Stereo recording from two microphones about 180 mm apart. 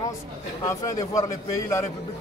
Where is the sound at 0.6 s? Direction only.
15° left (ahead or behind).